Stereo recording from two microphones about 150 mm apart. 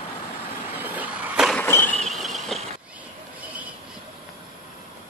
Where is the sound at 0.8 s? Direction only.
10° right (ahead or behind).